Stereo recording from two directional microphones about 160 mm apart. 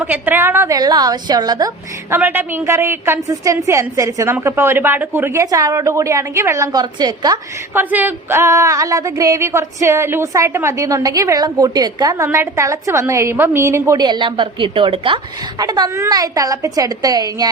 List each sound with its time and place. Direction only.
0.0 s a woman's voice: 10° right (ahead or behind)
7.8 s speech: 10° right (ahead or behind)